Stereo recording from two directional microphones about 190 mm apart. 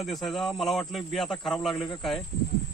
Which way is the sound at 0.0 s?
Centre (ahead or behind).